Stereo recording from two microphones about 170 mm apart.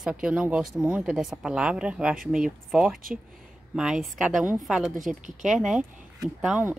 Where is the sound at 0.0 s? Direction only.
5° right (ahead or behind).